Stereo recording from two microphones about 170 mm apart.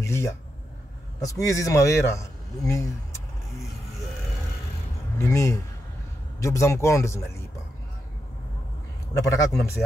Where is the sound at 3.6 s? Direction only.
Centre (ahead or behind).